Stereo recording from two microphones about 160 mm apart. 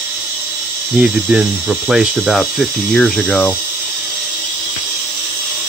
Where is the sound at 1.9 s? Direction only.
5° right (ahead or behind).